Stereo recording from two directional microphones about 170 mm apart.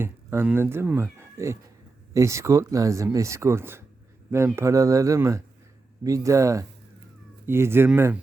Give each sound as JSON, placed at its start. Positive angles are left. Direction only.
{"t": 0.0, "sound": "speech", "side_deg": -15}
{"t": 1.2, "sound": "cat", "side_deg": -15}
{"t": 2.1, "sound": "speech", "side_deg": -15}